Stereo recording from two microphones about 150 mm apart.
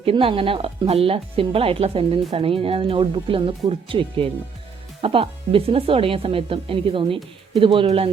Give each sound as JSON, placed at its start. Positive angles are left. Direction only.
{"t": 0.0, "sound": "speech", "side_deg": -35}